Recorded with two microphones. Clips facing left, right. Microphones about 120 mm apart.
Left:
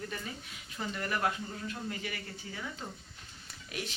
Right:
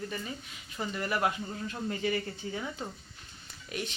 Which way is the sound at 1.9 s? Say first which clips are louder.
Right 8 dB; 30° right (ahead or behind).